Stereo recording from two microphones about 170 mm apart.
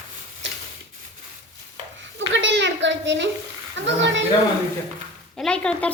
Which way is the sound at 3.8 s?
90° right.